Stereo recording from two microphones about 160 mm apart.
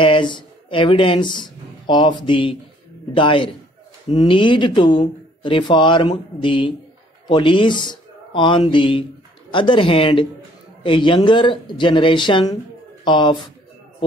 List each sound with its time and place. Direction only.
0.0 s speech: 30° left (ahead or behind)